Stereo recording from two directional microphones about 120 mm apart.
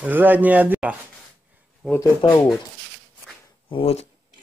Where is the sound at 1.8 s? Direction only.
Centre (ahead or behind).